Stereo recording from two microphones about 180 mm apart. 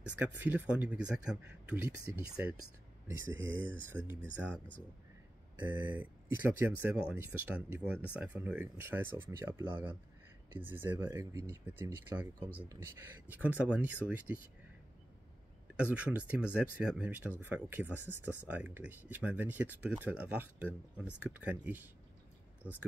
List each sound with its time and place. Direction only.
0.0 s speech: 10° right (ahead or behind)
3.3 s speech: 90° right
3.6 s speech: 10° right (ahead or behind)
5.7 s speech: 10° right (ahead or behind)
15.7 s speech: 5° right (ahead or behind)
17.9 s speech: 10° left (ahead or behind)
18.5 s speech: 10° right (ahead or behind)